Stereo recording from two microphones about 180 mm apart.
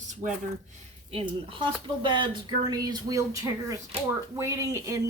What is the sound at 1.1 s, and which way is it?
A woman's voice, 30° right (ahead or behind).